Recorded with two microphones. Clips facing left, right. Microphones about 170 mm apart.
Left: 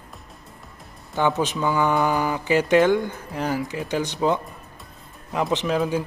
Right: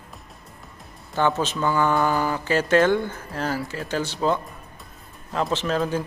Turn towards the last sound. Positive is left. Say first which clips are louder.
# left 1 dB
turn(degrees=10)  # may be behind; listen again after turning